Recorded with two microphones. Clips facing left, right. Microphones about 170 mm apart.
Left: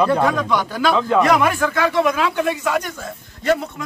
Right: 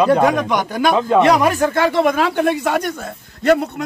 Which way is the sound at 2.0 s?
50° right (ahead or behind).